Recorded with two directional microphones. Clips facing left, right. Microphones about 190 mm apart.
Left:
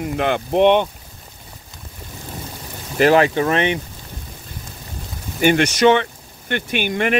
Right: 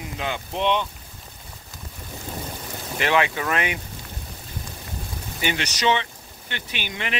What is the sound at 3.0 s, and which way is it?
Speech, 40° left (ahead or behind).